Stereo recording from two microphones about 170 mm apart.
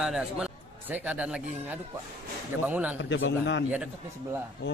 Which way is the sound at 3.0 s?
90° left.